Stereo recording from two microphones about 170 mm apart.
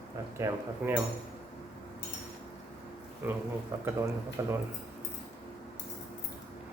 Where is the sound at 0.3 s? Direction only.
15° right (ahead or behind).